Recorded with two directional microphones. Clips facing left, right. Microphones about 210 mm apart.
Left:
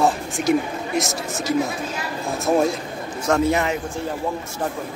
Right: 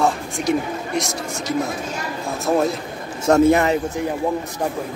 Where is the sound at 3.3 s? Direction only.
35° right (ahead or behind).